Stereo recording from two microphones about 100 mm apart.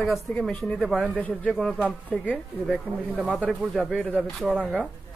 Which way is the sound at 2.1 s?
10° left (ahead or behind).